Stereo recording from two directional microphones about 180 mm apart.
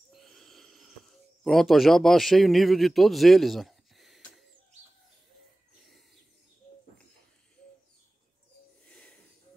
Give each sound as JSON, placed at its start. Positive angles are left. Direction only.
{"t": 0.1, "sound": "wheeze", "side_deg": 0}
{"t": 1.4, "sound": "a man's voice", "side_deg": 0}
{"t": 8.8, "sound": "a sound", "side_deg": 5}